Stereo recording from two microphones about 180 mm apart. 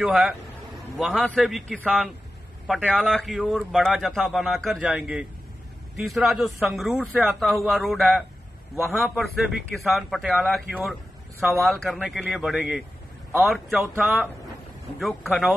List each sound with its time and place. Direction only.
0.0 s a man's voice: centre (ahead or behind)